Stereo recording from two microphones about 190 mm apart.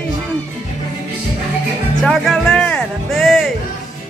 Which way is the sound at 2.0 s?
Centre (ahead or behind).